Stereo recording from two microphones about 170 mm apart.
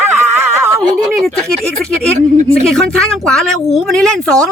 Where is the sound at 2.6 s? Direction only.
5° left (ahead or behind).